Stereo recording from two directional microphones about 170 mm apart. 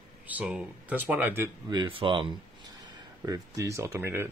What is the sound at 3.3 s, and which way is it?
Speech, 20° right (ahead or behind).